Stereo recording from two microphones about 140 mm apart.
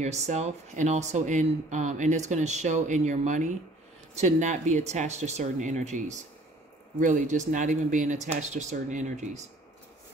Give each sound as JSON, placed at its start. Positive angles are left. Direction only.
{"t": 0.0, "sound": "speech", "side_deg": -55}